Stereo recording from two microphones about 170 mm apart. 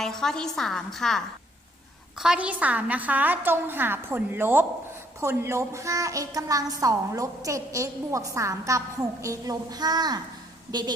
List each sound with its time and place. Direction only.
0.0 s a woman's voice: 5° left (ahead or behind); by 10.9 s 25° right (ahead or behind)